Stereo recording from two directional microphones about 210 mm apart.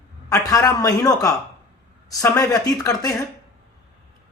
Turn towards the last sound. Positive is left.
turn(degrees=15)  # may be behind; listen again after turning